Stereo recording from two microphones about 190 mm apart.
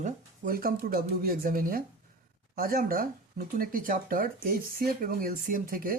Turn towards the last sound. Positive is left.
turn(degrees=-45)  # may be behind; listen again after turning